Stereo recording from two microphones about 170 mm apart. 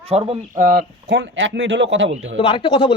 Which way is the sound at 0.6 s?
60° right (ahead or behind).